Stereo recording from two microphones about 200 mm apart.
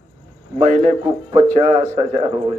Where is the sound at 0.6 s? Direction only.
35° right (ahead or behind).